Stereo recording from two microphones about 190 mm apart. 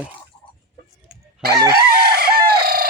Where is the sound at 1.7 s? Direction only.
55° right (ahead or behind).